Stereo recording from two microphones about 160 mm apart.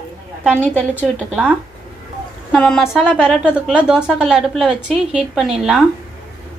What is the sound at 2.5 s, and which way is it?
A woman's voice, 5° left (ahead or behind).